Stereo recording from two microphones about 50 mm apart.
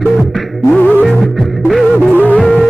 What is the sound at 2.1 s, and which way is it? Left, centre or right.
Music, left.